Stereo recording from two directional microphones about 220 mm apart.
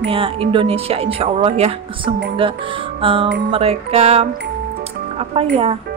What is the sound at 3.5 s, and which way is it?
Speech, 30° right (ahead or behind).